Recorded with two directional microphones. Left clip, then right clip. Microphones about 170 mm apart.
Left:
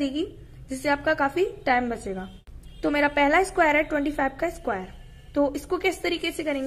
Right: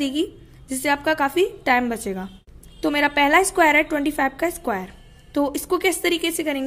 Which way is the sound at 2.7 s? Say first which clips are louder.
Right 3 dB; 25° right (ahead or behind).